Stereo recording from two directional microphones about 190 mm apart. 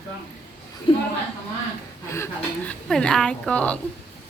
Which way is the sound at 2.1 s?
10° left (ahead or behind).